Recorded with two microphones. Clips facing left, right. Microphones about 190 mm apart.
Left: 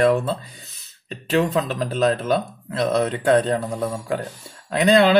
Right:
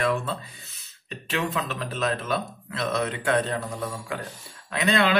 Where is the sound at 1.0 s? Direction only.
35° left (ahead or behind).